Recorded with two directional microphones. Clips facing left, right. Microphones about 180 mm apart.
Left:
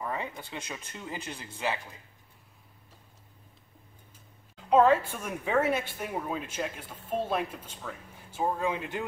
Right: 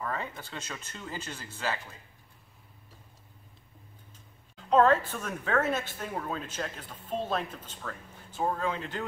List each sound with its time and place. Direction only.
0.0 s speech: 15° left (ahead or behind)
4.6 s speech: 10° left (ahead or behind)